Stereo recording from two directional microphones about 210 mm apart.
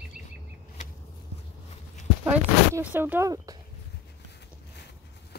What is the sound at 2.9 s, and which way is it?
Speech, 10° right (ahead or behind).